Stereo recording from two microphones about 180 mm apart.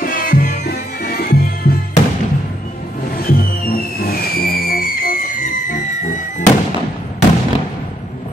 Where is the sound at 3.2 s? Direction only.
55° left (ahead or behind).